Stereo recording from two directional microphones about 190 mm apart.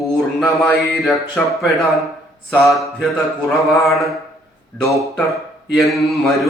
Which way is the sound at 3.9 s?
Centre (ahead or behind).